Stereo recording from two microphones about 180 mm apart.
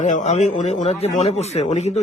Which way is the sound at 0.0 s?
40° left (ahead or behind).